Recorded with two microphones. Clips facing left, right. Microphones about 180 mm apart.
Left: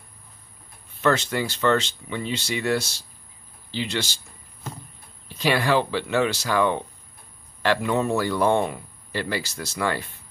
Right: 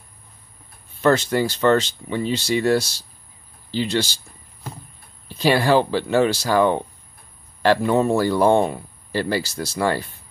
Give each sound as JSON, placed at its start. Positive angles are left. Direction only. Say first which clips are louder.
{"t": 1.0, "sound": "speech", "louder": "right 5 dB", "side_deg": -35}
{"t": 5.4, "sound": "speech", "louder": "right 4 dB", "side_deg": -30}